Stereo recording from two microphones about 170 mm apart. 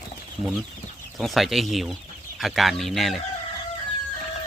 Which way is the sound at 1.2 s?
Centre (ahead or behind).